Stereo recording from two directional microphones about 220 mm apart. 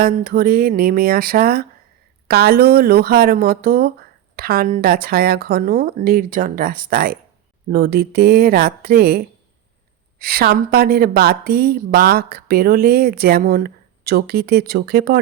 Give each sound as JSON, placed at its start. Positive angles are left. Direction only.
{"t": 0.0, "sound": "a woman's voice", "side_deg": -40}